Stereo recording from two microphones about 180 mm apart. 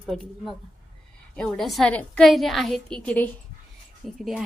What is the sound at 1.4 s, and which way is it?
A woman's voice, 5° left (ahead or behind).